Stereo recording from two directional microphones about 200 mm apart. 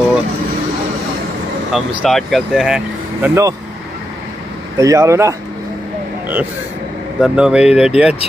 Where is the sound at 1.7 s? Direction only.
Centre (ahead or behind).